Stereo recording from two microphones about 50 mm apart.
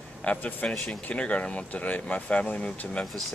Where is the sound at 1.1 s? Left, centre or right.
Left.